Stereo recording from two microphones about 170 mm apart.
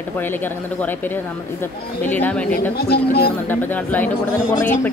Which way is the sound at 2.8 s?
70° left (ahead or behind).